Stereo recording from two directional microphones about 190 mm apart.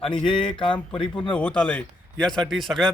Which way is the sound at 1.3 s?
5° left (ahead or behind).